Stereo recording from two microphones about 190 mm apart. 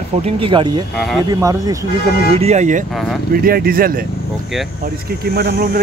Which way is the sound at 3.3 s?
50° right (ahead or behind).